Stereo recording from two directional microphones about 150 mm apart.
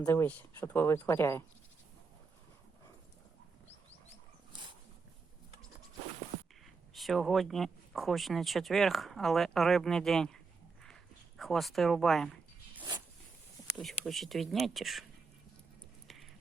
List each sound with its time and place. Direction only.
0.0 s speech: 15° left (ahead or behind)
6.9 s speech: centre (ahead or behind)
13.7 s speech: centre (ahead or behind)
16.0 s a sound: centre (ahead or behind)